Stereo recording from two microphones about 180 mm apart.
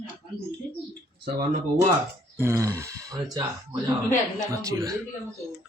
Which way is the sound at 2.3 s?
15° right (ahead or behind).